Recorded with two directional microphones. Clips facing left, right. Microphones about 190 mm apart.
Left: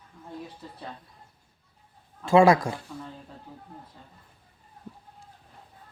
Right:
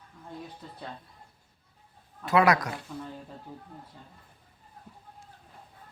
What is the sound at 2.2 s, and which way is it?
Speech, 25° left (ahead or behind).